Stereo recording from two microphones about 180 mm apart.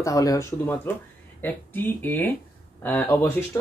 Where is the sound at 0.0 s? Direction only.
20° left (ahead or behind).